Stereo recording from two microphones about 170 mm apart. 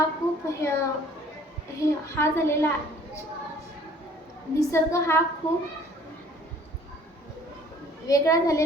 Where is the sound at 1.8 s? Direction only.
15° left (ahead or behind).